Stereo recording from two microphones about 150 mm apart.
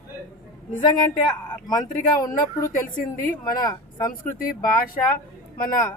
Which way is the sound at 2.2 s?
25° left (ahead or behind).